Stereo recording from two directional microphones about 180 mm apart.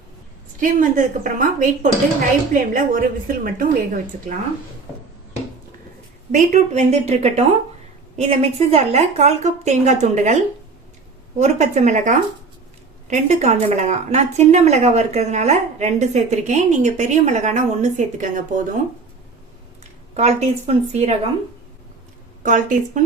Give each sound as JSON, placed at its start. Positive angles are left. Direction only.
{"t": 0.6, "sound": "a woman's voice", "side_deg": -45}
{"t": 6.3, "sound": "a woman's voice", "side_deg": -40}
{"t": 11.3, "sound": "a woman's voice", "side_deg": -40}
{"t": 20.1, "sound": "a woman's voice", "side_deg": -35}
{"t": 22.4, "sound": "a woman's voice", "side_deg": -45}